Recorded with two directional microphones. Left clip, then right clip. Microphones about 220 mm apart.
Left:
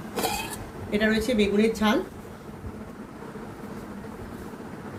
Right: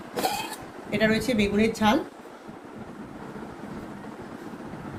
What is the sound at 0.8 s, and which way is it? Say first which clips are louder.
A woman's voice: even; 50° right (ahead or behind).